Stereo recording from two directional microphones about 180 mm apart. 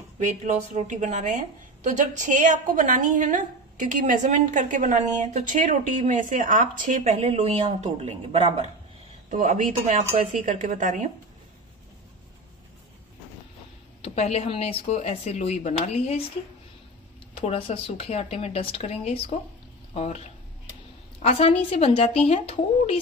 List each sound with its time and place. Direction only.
0.7 s a woman's voice: 45° right (ahead or behind)
14.0 s speech: 35° left (ahead or behind)
17.3 s speech: 30° left (ahead or behind)
21.2 s speech: 35° left (ahead or behind)